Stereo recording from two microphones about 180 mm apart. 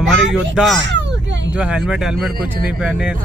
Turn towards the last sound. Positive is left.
turn(degrees=-5)  # may be behind; listen again after turning